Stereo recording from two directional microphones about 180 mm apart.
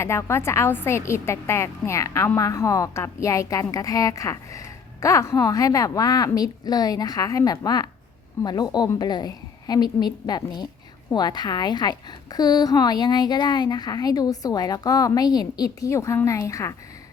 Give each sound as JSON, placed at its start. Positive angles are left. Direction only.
{"t": 0.0, "sound": "a woman's voice", "side_deg": 15}